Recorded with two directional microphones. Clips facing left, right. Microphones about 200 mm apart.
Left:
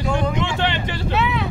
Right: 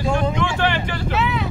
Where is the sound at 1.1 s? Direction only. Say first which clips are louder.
Left 1 dB; centre (ahead or behind).